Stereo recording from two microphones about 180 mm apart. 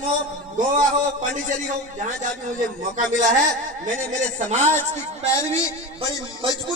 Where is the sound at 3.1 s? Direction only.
45° right (ahead or behind).